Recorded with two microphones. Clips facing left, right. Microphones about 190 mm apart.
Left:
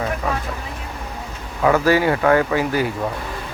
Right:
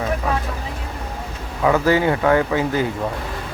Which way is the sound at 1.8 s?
20° right (ahead or behind).